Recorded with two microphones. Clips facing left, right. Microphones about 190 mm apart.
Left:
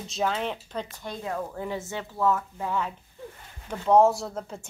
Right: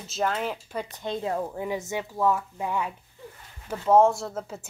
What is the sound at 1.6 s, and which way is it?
Speech, 15° right (ahead or behind).